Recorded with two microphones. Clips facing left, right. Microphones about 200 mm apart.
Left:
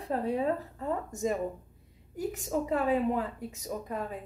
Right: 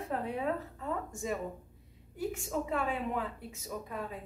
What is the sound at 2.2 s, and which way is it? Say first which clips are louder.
Speech: left 3 dB; 40° left (ahead or behind).